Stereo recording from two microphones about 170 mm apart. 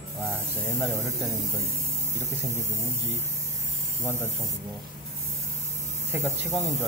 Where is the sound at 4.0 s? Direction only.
15° right (ahead or behind).